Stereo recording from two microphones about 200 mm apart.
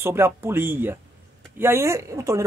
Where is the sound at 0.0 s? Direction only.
10° right (ahead or behind).